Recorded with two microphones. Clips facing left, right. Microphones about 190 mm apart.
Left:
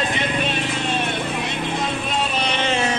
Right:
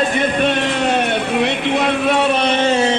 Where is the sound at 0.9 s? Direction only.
70° right (ahead or behind).